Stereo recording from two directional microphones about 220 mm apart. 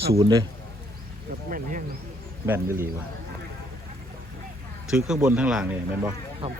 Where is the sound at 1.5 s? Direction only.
35° right (ahead or behind).